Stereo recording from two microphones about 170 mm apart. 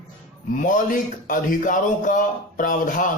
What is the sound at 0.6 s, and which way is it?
A man's voice, 50° left (ahead or behind).